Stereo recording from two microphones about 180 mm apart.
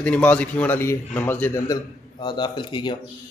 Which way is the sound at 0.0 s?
5° left (ahead or behind).